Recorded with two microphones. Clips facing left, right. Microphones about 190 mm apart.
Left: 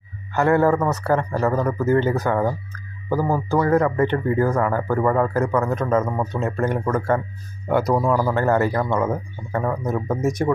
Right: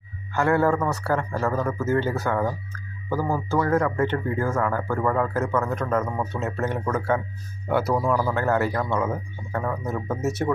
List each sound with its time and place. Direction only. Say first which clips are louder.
0.3 s speech: left 4 dB; 20° left (ahead or behind)